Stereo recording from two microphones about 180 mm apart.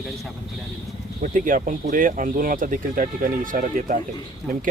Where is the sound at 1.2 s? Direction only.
50° right (ahead or behind).